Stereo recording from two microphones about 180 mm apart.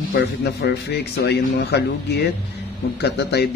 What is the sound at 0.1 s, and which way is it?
Speech, 65° left (ahead or behind).